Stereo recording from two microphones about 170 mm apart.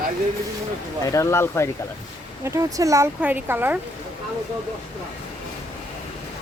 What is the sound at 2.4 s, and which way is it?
Speech, 20° right (ahead or behind).